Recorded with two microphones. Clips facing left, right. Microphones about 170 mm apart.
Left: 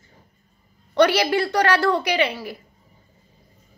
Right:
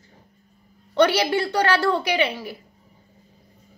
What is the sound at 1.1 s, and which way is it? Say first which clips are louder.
A woman's voice: left 1 dB; 30° right (ahead or behind).